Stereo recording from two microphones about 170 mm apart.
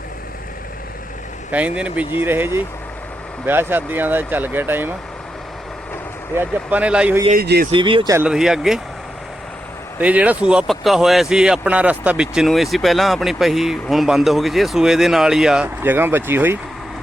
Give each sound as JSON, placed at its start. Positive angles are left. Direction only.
{"t": 1.5, "sound": "speech", "side_deg": -10}
{"t": 6.3, "sound": "speech", "side_deg": -10}
{"t": 7.3, "sound": "speech", "side_deg": -65}
{"t": 7.7, "sound": "speech", "side_deg": -30}
{"t": 8.1, "sound": "speech", "side_deg": -5}
{"t": 10.0, "sound": "speech", "side_deg": -10}